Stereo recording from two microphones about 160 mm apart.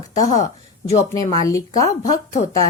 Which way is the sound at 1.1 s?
20° left (ahead or behind).